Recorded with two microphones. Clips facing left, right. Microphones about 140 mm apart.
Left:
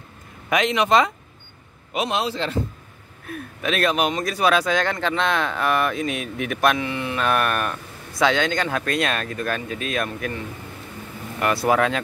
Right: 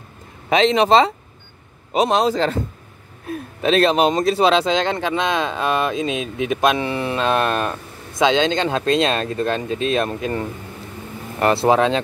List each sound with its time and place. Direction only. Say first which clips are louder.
0.5 s speech: right 5 dB; 30° right (ahead or behind)
3.3 s speech: right 7 dB; 30° right (ahead or behind)
6.8 s speech: right 4 dB; 35° right (ahead or behind)
11.3 s speech: right 4 dB; 30° right (ahead or behind)